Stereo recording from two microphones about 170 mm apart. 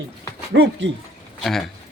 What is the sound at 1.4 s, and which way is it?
Speech, centre (ahead or behind).